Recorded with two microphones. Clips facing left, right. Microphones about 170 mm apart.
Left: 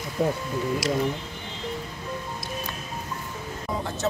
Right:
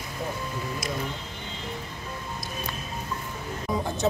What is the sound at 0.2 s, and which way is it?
Speech, 60° left (ahead or behind).